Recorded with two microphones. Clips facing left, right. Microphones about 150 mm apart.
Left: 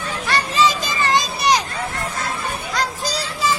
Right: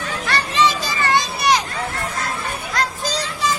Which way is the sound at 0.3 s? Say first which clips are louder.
Left 1 dB; 10° left (ahead or behind).